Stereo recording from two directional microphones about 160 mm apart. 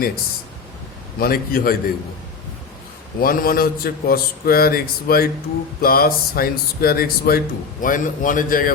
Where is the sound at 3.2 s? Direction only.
65° left (ahead or behind).